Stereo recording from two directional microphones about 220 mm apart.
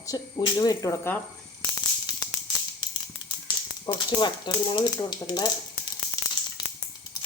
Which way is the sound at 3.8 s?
20° left (ahead or behind).